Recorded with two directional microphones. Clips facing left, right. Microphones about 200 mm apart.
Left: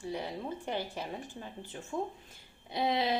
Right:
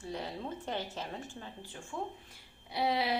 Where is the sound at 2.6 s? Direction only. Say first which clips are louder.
Left 1 dB; 20° left (ahead or behind).